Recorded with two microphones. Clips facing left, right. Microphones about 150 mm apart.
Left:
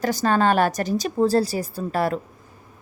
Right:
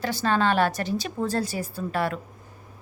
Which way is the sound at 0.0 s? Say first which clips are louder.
Left 4 dB; 45° left (ahead or behind).